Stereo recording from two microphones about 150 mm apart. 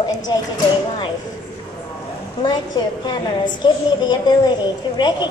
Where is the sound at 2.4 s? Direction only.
30° left (ahead or behind).